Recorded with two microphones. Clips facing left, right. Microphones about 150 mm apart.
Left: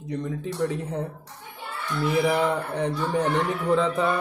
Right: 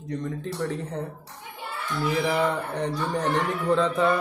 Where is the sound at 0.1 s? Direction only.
5° left (ahead or behind).